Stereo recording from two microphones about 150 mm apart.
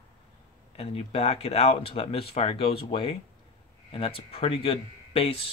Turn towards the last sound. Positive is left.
turn(degrees=40)  # may be behind; listen again after turning